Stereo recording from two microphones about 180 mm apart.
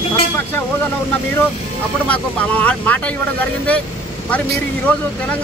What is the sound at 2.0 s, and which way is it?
Speech, 10° left (ahead or behind).